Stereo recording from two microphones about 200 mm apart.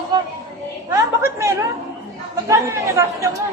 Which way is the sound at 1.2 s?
15° right (ahead or behind).